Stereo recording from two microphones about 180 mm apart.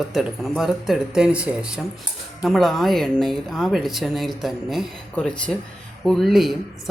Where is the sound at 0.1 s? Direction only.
Centre (ahead or behind).